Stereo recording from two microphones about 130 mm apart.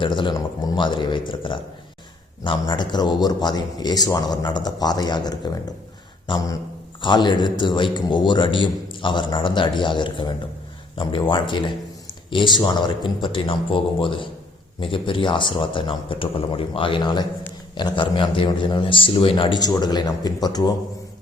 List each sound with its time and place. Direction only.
0.0 s speech: 40° left (ahead or behind)